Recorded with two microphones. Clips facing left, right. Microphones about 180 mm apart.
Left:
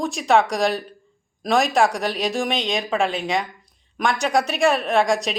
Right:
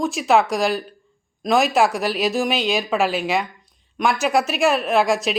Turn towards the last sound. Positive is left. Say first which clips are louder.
# right 1 dB
turn(degrees=0)  # may be behind; listen again after turning